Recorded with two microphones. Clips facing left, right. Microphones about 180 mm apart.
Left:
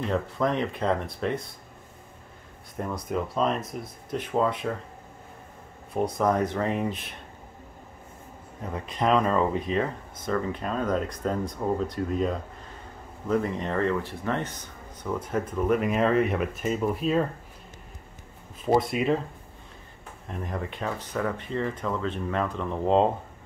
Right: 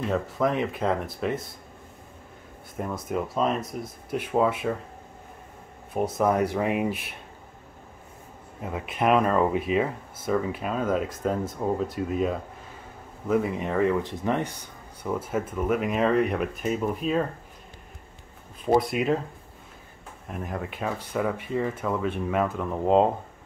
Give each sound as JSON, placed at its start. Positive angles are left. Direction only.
{"t": 0.1, "sound": "speech", "side_deg": -5}
{"t": 3.1, "sound": "speech", "side_deg": -5}
{"t": 5.9, "sound": "speech", "side_deg": -5}
{"t": 8.6, "sound": "speech", "side_deg": -5}
{"t": 18.7, "sound": "speech", "side_deg": 0}
{"t": 20.2, "sound": "speech", "side_deg": -5}